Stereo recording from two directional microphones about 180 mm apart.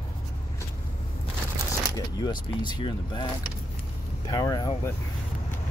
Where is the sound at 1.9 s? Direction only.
20° left (ahead or behind).